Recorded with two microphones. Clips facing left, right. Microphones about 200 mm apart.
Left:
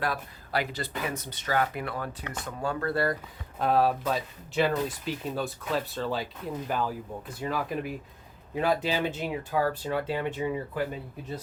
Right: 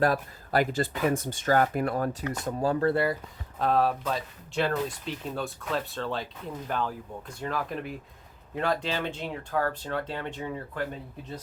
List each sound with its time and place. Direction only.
0.0 s speech: 45° right (ahead or behind)
3.6 s speech: 5° left (ahead or behind)